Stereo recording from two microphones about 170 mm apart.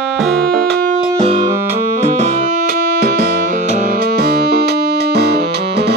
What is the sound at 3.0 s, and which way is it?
Music, 60° right (ahead or behind).